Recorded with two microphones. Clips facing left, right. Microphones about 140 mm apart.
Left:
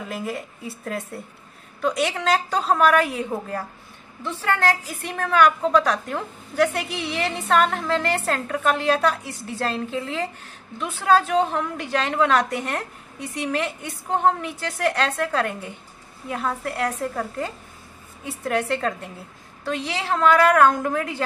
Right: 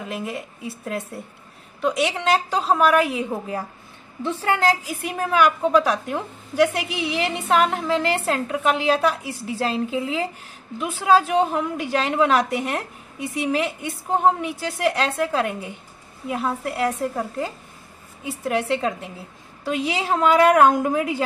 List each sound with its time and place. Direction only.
0.1 s a woman's voice: centre (ahead or behind)